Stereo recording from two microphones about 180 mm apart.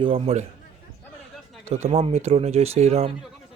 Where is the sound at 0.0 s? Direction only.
30° right (ahead or behind).